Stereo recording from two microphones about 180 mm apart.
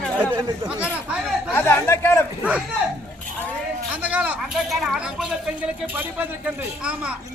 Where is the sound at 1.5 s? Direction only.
10° left (ahead or behind).